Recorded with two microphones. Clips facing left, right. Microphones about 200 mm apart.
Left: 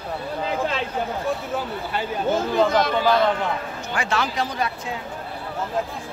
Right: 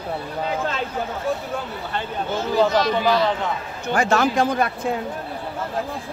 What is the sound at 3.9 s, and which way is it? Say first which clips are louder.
Speech: right 7 dB; 45° right (ahead or behind).